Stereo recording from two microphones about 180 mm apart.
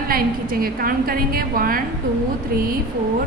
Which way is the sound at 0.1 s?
55° right (ahead or behind).